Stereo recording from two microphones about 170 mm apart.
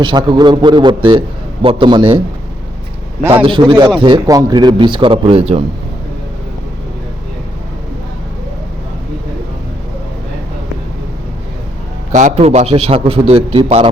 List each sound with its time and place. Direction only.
0.0 s speech: 25° right (ahead or behind)
3.3 s speech: 30° right (ahead or behind)
12.1 s a man's voice: 40° right (ahead or behind)